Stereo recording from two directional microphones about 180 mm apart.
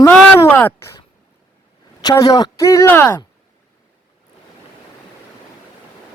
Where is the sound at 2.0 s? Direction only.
20° left (ahead or behind).